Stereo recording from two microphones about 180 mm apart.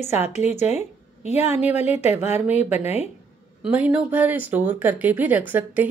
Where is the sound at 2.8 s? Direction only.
35° left (ahead or behind).